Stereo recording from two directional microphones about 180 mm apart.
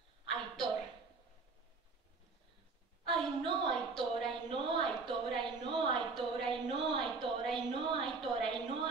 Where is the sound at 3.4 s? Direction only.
25° right (ahead or behind).